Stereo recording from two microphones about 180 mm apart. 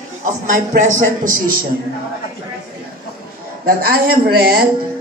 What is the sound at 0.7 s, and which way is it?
Speech, 45° right (ahead or behind).